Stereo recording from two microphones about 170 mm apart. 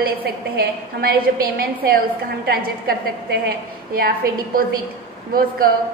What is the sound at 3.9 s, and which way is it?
Speech, 60° right (ahead or behind).